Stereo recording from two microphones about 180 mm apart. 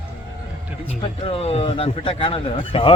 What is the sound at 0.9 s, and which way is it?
Speech, 30° left (ahead or behind).